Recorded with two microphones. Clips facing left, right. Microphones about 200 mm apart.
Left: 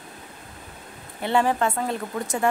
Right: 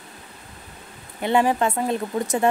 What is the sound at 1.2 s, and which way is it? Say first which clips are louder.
Speech: right 2 dB; 15° right (ahead or behind).